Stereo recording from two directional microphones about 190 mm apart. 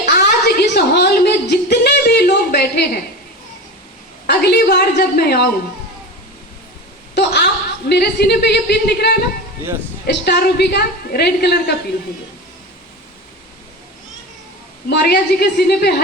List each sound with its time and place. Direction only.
0.0 s a sound: 60° left (ahead or behind)
4.3 s a woman's voice: 60° left (ahead or behind)
7.2 s a woman's voice: 60° left (ahead or behind)
14.8 s a woman's voice: 60° left (ahead or behind)